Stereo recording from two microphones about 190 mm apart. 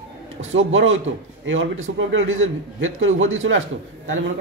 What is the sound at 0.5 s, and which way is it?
Speech, 90° right.